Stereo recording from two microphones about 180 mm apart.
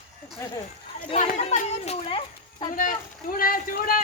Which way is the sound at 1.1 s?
35° left (ahead or behind).